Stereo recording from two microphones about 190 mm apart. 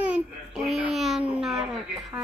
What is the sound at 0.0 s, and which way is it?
Babbling, 5° right (ahead or behind).